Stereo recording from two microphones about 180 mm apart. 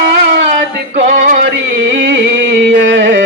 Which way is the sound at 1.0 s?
45° right (ahead or behind).